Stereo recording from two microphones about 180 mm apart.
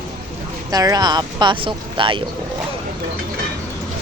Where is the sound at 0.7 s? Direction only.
20° right (ahead or behind).